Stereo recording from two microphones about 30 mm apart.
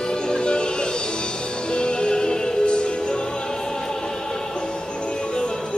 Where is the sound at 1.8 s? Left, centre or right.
Left.